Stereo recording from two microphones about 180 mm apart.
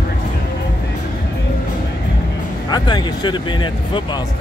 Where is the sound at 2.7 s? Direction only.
25° left (ahead or behind).